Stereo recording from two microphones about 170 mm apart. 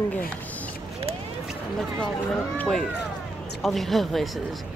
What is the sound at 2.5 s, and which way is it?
Speech, 10° left (ahead or behind).